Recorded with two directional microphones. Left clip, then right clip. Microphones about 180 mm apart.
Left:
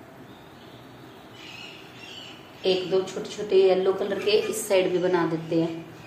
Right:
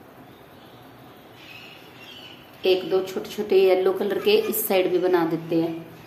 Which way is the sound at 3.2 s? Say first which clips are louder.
Right 2 dB; 70° right (ahead or behind).